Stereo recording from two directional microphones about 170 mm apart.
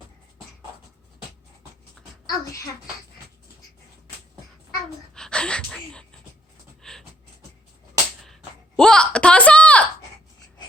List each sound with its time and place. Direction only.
2.4 s a child's voice: 20° left (ahead or behind)
5.1 s gasp: 5° left (ahead or behind)
6.8 s beatboxing: 5° left (ahead or behind)
8.2 s a sound: 5° left (ahead or behind)